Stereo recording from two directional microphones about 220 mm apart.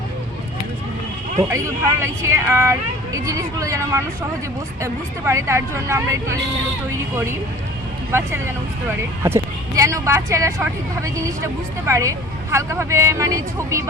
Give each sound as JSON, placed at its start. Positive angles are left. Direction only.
{"t": 1.5, "sound": "speech", "side_deg": -10}
{"t": 9.2, "sound": "speech", "side_deg": -10}